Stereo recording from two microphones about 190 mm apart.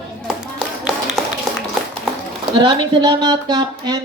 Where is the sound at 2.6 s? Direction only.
25° right (ahead or behind).